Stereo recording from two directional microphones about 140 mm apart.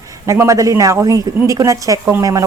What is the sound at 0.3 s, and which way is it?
Speech, 20° right (ahead or behind).